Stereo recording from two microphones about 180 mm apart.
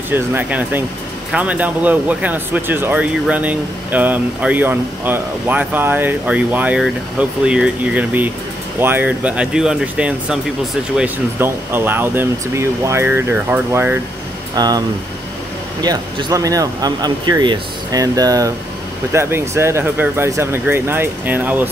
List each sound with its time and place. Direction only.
0.1 s speech: 10° right (ahead or behind)
14.5 s speech: 20° right (ahead or behind)
15.8 s speech: 20° right (ahead or behind)